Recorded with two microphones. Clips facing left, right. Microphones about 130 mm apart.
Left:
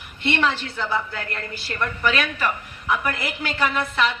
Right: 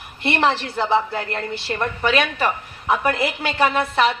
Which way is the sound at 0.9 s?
25° right (ahead or behind).